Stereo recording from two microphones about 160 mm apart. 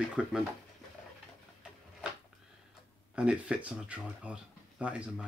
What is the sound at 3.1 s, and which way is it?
Speech, 5° right (ahead or behind).